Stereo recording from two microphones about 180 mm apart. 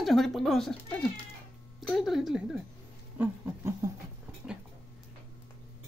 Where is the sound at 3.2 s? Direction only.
15° right (ahead or behind).